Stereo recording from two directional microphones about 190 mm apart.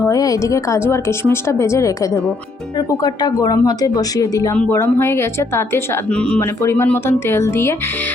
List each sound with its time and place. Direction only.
0.0 s speech: 15° left (ahead or behind)